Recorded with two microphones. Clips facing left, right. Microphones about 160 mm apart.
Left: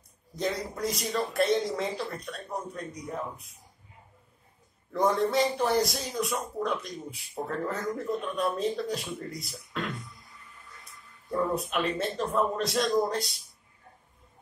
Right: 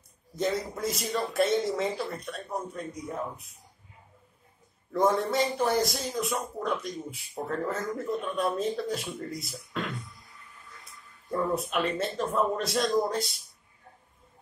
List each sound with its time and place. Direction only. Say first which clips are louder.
0.4 s speech: right 1 dB; centre (ahead or behind)
4.9 s speech: even; centre (ahead or behind)
11.2 s speech: even; centre (ahead or behind)